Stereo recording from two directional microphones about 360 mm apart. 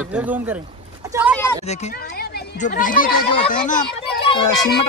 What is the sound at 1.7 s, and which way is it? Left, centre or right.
Speech, centre.